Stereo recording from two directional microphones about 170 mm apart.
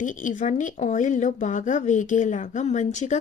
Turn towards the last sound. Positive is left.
turn(degrees=45)  # may be behind; listen again after turning